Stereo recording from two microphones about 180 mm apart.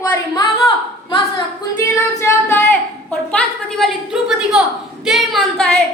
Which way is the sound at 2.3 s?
15° left (ahead or behind).